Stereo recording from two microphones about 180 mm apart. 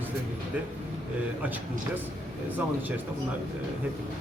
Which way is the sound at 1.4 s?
10° right (ahead or behind).